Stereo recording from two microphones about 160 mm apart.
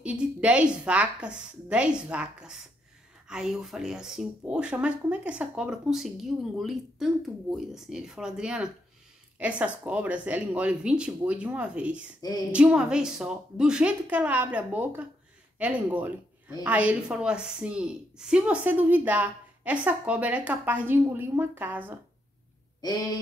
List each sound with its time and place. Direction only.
0.0 s a woman's voice: 5° right (ahead or behind)
22.8 s speech: 25° left (ahead or behind)